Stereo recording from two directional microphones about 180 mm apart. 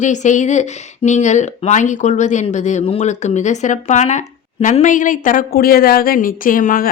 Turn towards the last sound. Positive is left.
turn(degrees=50)  # may be behind; listen again after turning